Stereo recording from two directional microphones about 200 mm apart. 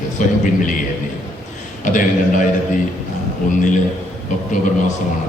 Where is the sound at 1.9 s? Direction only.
40° left (ahead or behind).